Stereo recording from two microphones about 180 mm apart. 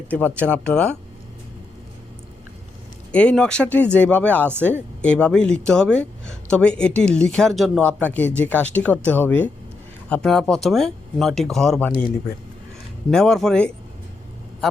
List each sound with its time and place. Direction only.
0.1 s speech: 10° left (ahead or behind)
3.1 s speech: 5° left (ahead or behind)
13.1 s speech: 5° left (ahead or behind)